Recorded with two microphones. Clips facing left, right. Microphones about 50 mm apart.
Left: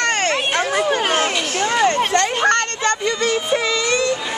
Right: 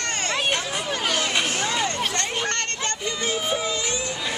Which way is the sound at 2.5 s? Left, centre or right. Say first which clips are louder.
Left 10 dB; left.